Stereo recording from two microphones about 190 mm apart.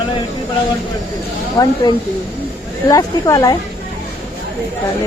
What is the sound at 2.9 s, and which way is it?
Speech, 20° left (ahead or behind).